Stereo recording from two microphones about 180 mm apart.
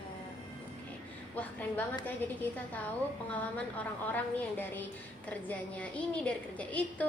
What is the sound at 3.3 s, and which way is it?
A woman's voice, 10° left (ahead or behind).